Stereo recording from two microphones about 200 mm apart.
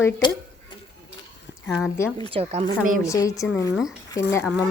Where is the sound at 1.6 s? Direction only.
Centre (ahead or behind).